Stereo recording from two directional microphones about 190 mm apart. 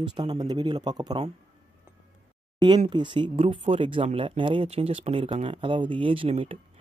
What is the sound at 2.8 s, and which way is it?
Speech, 25° right (ahead or behind).